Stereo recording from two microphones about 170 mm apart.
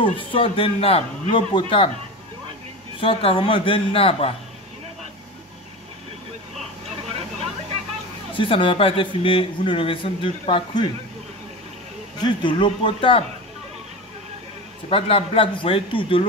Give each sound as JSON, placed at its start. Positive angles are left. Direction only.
{"t": 0.0, "sound": "a man's voice", "side_deg": 30}
{"t": 3.0, "sound": "a man's voice", "side_deg": 30}
{"t": 8.4, "sound": "a man's voice", "side_deg": 30}
{"t": 12.2, "sound": "speech", "side_deg": 25}
{"t": 14.9, "sound": "a man's voice", "side_deg": 35}